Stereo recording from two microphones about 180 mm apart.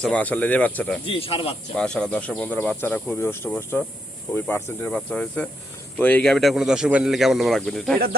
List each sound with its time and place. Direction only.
0.0 s speech: 5° left (ahead or behind)
1.0 s speech: 30° left (ahead or behind)
1.7 s speech: 5° left (ahead or behind)